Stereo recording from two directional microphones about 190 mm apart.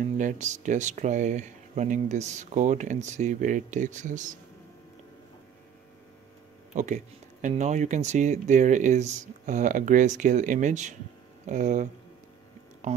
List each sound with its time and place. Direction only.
0.0 s speech: 40° right (ahead or behind)
6.7 s speech: 40° right (ahead or behind)